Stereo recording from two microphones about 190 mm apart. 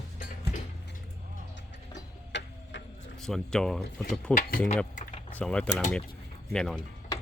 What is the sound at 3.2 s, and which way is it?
Speech, centre (ahead or behind).